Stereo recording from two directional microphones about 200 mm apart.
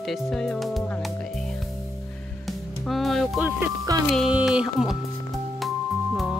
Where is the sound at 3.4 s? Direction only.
15° right (ahead or behind).